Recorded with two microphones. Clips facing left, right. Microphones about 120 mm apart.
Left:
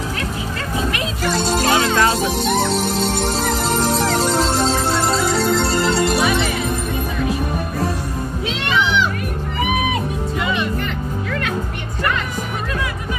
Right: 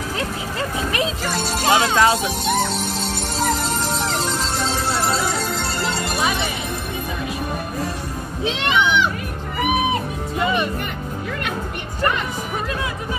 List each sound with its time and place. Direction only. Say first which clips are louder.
1.7 s music: right 2 dB; 15° right (ahead or behind)
5.6 s music: left 6 dB; 40° left (ahead or behind)